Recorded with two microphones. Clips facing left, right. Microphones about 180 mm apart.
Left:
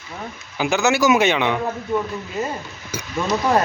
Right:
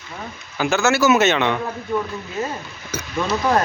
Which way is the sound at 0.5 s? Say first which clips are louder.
Even; 15° left (ahead or behind).